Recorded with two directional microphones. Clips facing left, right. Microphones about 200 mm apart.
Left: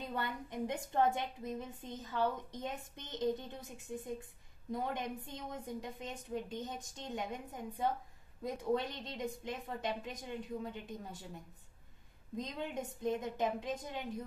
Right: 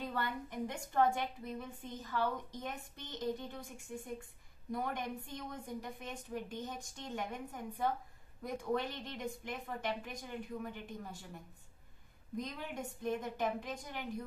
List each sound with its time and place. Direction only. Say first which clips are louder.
0.1 s a woman's voice: even; 20° left (ahead or behind)
12.4 s a woman's voice: left 2 dB; 20° left (ahead or behind)